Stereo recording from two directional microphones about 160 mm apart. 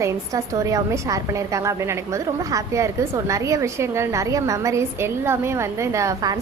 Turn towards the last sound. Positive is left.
turn(degrees=-20)  # may be behind; listen again after turning